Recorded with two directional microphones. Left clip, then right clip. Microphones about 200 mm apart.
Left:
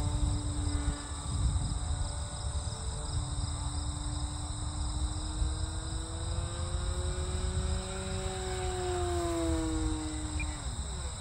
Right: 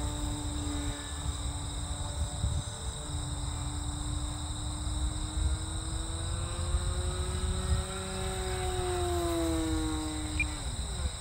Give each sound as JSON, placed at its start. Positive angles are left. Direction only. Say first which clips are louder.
{"t": 8.1, "sound": "music", "louder": "right 1 dB", "side_deg": 15}